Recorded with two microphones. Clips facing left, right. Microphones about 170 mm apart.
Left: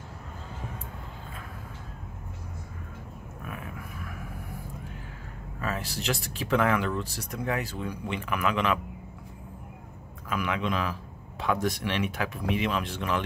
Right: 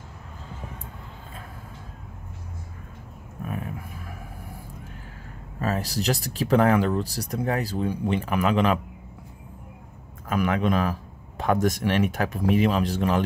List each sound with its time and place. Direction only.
3.4 s a sound: 35° right (ahead or behind)
5.6 s speech: 40° right (ahead or behind)
10.3 s speech: 45° right (ahead or behind)